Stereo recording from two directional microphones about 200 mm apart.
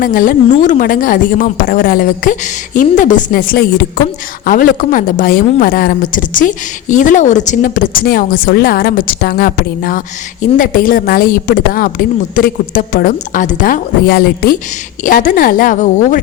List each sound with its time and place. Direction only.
0.0 s a woman's voice: 45° left (ahead or behind)